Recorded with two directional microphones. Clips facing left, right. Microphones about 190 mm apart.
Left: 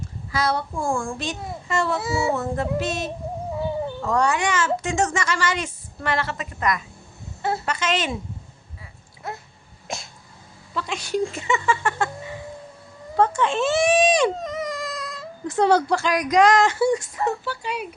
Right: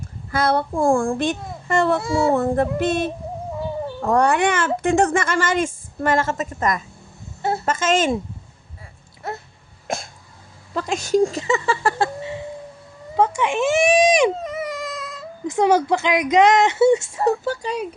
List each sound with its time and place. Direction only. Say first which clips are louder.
0.3 s a child's voice: right 4 dB; 55° right (ahead or behind)
2.0 s child singing: right 4 dB; 5° left (ahead or behind)
2.3 s a child's voice: right 5 dB; 55° right (ahead or behind)
9.8 s cough: right 6 dB; 50° right (ahead or behind)
10.8 s a sound: right 6 dB; 45° right (ahead or behind); by 12.4 s 30° right (ahead or behind)
13.1 s baby cry: right 1 dB; 15° right (ahead or behind)
15.4 s speech: right 2 dB; 15° right (ahead or behind)
17.4 s speech: right 5 dB; 40° right (ahead or behind)